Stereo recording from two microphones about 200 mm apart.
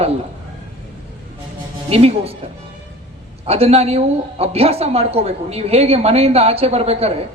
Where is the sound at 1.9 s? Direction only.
30° right (ahead or behind).